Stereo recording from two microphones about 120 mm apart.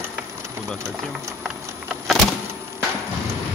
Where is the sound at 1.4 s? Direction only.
5° right (ahead or behind).